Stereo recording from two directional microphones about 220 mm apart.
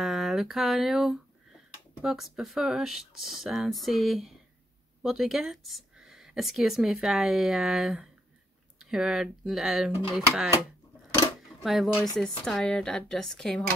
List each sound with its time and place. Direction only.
0.0 s speech: centre (ahead or behind)
11.6 s speech: centre (ahead or behind)